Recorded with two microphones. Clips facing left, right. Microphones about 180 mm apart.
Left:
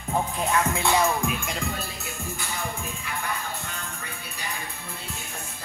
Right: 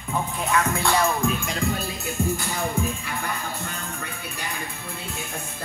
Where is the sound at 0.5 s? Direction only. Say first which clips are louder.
Right 1 dB; 20° left (ahead or behind).